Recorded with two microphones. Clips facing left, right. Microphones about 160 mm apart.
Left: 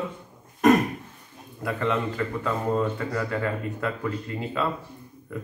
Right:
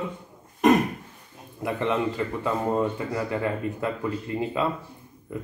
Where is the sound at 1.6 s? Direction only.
25° right (ahead or behind).